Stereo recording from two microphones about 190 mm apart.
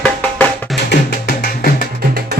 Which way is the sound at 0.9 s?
55° left (ahead or behind).